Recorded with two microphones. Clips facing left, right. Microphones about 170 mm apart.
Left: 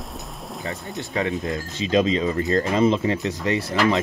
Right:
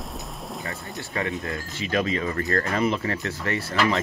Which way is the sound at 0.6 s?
20° left (ahead or behind).